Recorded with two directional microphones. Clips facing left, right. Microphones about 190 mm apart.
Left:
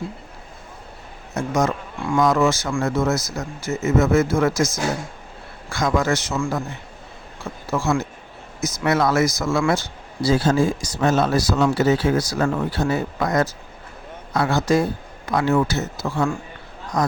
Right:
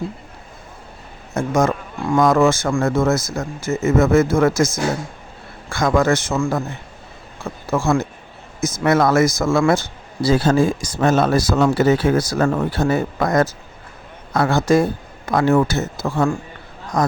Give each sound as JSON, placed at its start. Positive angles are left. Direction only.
{"t": 1.4, "sound": "speech", "side_deg": -50}
{"t": 7.7, "sound": "speech", "side_deg": -50}
{"t": 10.2, "sound": "speech", "side_deg": -60}